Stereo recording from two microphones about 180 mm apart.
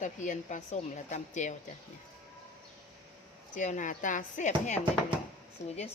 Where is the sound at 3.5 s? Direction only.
40° left (ahead or behind).